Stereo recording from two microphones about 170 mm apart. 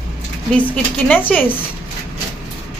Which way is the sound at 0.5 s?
10° left (ahead or behind).